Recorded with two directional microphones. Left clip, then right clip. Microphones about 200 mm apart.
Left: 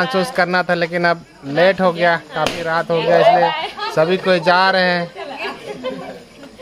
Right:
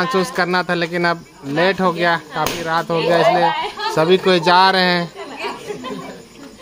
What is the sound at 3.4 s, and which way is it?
Speech, 35° left (ahead or behind).